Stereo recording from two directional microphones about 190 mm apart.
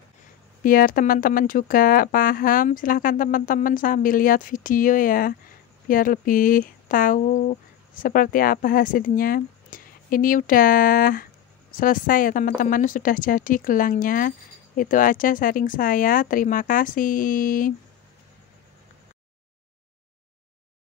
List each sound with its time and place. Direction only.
0.7 s speech: 50° left (ahead or behind)